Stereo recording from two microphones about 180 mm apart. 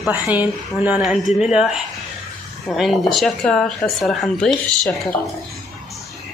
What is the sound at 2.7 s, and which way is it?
Speech, centre (ahead or behind).